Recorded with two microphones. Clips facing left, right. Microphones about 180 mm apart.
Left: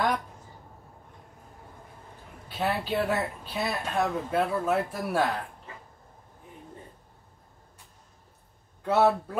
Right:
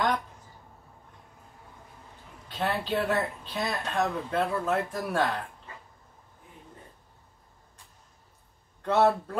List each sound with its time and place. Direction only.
2.4 s speech: 10° left (ahead or behind)
8.8 s speech: 10° left (ahead or behind)